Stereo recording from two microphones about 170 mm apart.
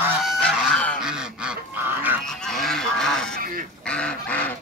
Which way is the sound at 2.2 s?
5° left (ahead or behind).